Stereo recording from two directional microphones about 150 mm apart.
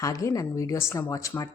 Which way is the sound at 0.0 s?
20° left (ahead or behind).